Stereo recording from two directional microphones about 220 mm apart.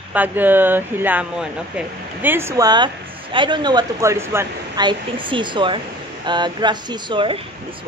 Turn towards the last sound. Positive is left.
turn(degrees=-25)  # may be behind; listen again after turning